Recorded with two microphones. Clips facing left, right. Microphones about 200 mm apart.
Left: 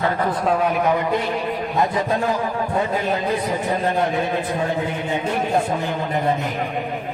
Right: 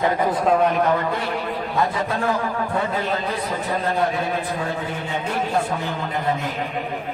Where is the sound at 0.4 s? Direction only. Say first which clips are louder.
Right 1 dB; centre (ahead or behind).